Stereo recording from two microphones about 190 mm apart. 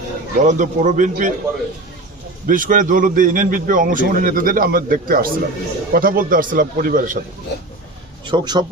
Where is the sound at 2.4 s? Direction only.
45° right (ahead or behind).